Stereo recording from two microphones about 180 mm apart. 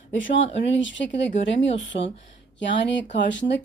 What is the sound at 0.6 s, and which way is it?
Speech, 90° left.